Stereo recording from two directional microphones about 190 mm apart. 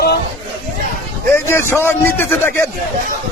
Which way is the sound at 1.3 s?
15° left (ahead or behind).